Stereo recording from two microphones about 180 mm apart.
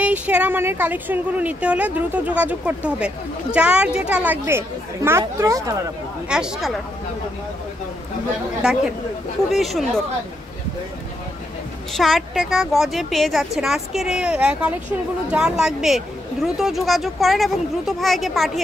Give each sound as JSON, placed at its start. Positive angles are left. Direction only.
{"t": 0.0, "sound": "a woman's voice", "side_deg": -5}
{"t": 6.2, "sound": "a woman's voice", "side_deg": -5}
{"t": 8.6, "sound": "a woman's voice", "side_deg": -5}
{"t": 11.9, "sound": "a woman's voice", "side_deg": 0}